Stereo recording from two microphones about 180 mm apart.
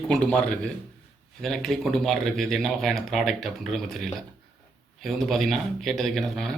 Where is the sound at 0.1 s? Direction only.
5° left (ahead or behind).